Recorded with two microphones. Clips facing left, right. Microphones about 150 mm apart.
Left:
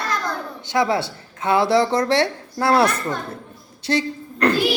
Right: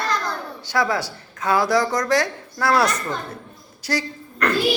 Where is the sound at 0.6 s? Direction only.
25° left (ahead or behind).